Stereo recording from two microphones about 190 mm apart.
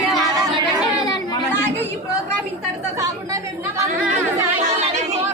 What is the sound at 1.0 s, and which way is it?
Chatter, 15° left (ahead or behind).